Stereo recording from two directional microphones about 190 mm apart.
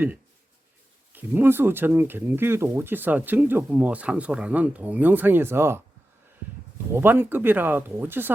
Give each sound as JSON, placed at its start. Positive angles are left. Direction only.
{"t": 1.1, "sound": "speech", "side_deg": -10}
{"t": 6.9, "sound": "speech", "side_deg": -10}